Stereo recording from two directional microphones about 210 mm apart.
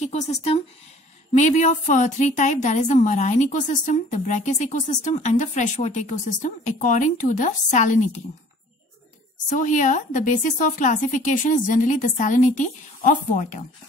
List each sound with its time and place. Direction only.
0.0 s a woman's voice: 30° left (ahead or behind)
9.5 s a woman's voice: 35° left (ahead or behind)